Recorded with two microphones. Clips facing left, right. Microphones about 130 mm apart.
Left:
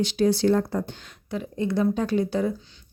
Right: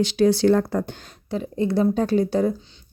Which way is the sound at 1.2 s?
35° right (ahead or behind).